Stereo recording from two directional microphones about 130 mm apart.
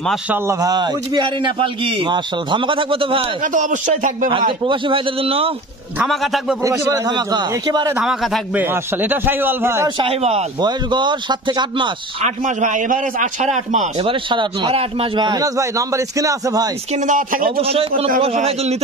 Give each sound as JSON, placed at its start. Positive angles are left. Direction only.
{"t": 0.3, "sound": "a man's voice", "side_deg": -25}
{"t": 3.5, "sound": "a man's voice", "side_deg": -75}
{"t": 4.3, "sound": "a man's voice", "side_deg": -40}
{"t": 6.0, "sound": "a man's voice", "side_deg": 0}
{"t": 6.6, "sound": "a man's voice", "side_deg": -20}
{"t": 8.0, "sound": "a man's voice", "side_deg": 0}
{"t": 8.5, "sound": "a man's voice", "side_deg": -15}
{"t": 9.9, "sound": "a man's voice", "side_deg": -50}
{"t": 10.6, "sound": "a man's voice", "side_deg": -35}
{"t": 12.4, "sound": "a man's voice", "side_deg": -70}
{"t": 13.9, "sound": "a man's voice", "side_deg": -35}
{"t": 16.9, "sound": "speech", "side_deg": -80}
{"t": 17.6, "sound": "a man's voice", "side_deg": -50}